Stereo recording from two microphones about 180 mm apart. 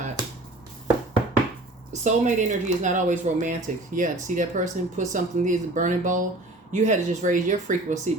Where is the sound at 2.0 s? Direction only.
40° right (ahead or behind).